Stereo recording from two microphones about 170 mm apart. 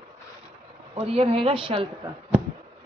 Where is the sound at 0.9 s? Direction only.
35° right (ahead or behind).